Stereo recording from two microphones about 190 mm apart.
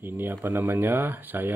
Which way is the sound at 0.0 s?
10° right (ahead or behind).